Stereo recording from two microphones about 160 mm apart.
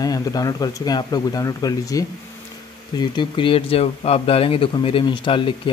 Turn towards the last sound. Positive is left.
turn(degrees=30)  # may be behind; listen again after turning